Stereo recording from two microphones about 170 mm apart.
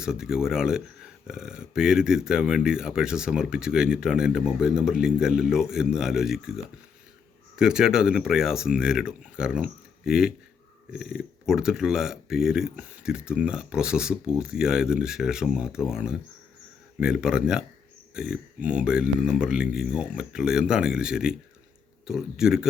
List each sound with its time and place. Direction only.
0.0 s speech: 5° right (ahead or behind)
7.5 s speech: 5° right (ahead or behind)